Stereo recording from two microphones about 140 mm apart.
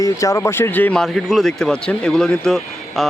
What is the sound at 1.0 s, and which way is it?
Speech, centre (ahead or behind).